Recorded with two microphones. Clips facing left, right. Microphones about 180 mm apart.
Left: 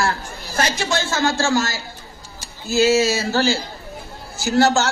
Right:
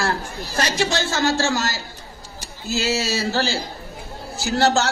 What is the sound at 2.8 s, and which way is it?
Speech, 35° right (ahead or behind).